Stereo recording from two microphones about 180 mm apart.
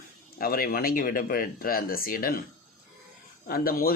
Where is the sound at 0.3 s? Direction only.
55° left (ahead or behind).